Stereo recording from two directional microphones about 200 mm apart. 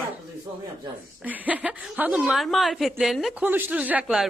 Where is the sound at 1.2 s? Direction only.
10° right (ahead or behind).